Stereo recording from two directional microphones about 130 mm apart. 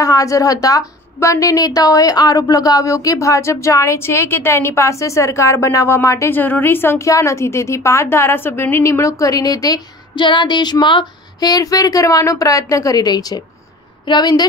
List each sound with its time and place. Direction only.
0.0 s a woman's voice: 25° left (ahead or behind)